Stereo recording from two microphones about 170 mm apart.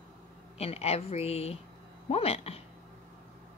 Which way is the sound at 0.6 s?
35° left (ahead or behind).